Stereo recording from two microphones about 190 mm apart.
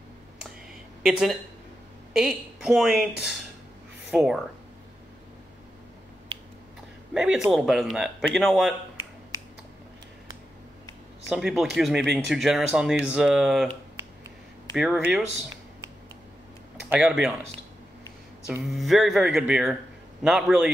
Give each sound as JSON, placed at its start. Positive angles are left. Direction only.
{"t": 1.0, "sound": "speech", "side_deg": 0}
{"t": 6.3, "sound": "finger snapping", "side_deg": -30}
{"t": 7.2, "sound": "speech", "side_deg": 0}
{"t": 11.2, "sound": "speech", "side_deg": -5}
{"t": 14.8, "sound": "speech", "side_deg": -10}
{"t": 16.9, "sound": "speech", "side_deg": -5}
{"t": 18.5, "sound": "speech", "side_deg": 0}